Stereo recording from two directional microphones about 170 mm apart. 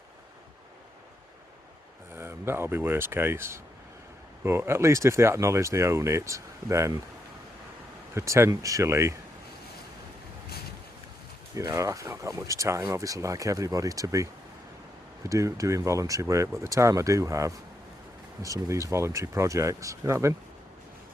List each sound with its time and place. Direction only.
2.1 s speech: 15° right (ahead or behind)
8.1 s speech: 15° right (ahead or behind)
11.5 s speech: 20° right (ahead or behind)
15.3 s speech: 20° right (ahead or behind)